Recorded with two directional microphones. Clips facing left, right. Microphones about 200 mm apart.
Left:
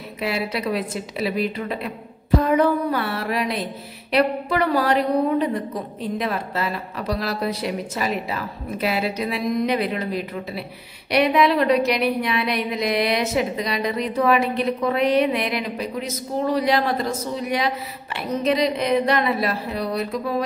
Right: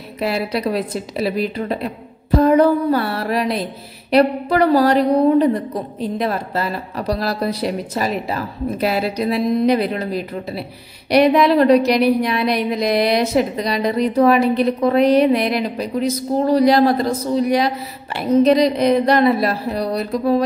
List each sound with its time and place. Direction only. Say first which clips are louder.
0.2 s a woman's voice: right 5 dB; 40° right (ahead or behind)